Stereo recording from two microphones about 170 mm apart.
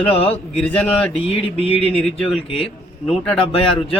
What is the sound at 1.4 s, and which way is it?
Speech, 35° left (ahead or behind).